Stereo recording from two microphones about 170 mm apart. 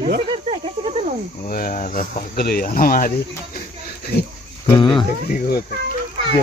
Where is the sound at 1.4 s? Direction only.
55° left (ahead or behind).